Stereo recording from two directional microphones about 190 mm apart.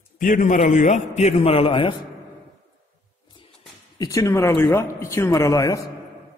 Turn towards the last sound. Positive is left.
turn(degrees=15)  # may be behind; listen again after turning